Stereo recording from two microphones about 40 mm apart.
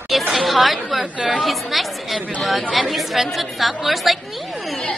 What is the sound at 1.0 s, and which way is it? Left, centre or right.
Speech, right.